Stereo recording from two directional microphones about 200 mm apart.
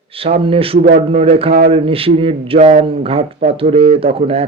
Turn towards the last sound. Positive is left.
turn(degrees=-30)  # may be behind; listen again after turning